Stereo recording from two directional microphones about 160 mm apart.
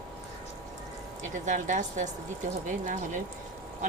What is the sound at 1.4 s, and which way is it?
Speech, 50° right (ahead or behind).